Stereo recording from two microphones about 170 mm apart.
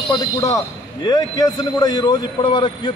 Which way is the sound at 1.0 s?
20° left (ahead or behind).